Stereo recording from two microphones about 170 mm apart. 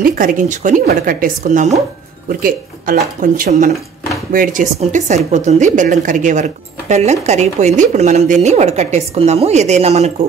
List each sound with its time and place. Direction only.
0.0 s a woman's voice: 55° right (ahead or behind)
4.7 s a woman's voice: 45° right (ahead or behind)